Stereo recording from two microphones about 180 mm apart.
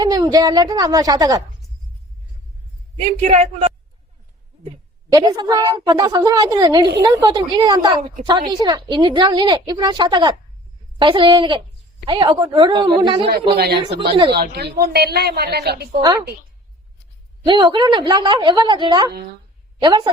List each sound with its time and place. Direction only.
0.0 s a woman's voice: 20° right (ahead or behind)
3.1 s a man's voice: 40° right (ahead or behind)
5.0 s a woman's voice: 25° right (ahead or behind)
13.6 s a woman's voice: 65° right (ahead or behind)
16.0 s a woman's voice: 20° right (ahead or behind)
17.4 s a woman's voice: 25° right (ahead or behind)